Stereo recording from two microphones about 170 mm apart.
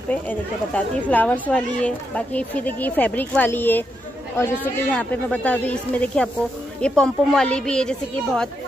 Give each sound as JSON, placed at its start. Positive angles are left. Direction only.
{"t": 0.1, "sound": "a woman's voice", "side_deg": 10}